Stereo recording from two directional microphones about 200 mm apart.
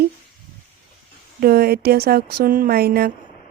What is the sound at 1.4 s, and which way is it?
Speech, 50° right (ahead or behind).